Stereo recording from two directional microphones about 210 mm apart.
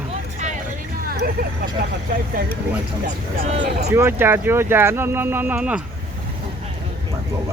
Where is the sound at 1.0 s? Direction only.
45° right (ahead or behind).